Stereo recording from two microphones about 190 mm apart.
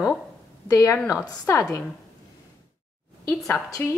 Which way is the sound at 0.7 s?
15° left (ahead or behind).